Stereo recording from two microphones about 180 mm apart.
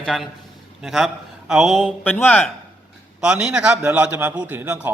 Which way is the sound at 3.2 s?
5° right (ahead or behind).